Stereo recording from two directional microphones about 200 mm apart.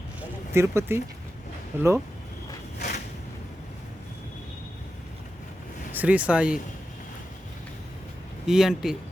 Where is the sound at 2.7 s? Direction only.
35° left (ahead or behind).